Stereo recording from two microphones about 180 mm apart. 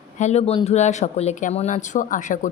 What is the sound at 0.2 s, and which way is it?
Speech, 35° left (ahead or behind).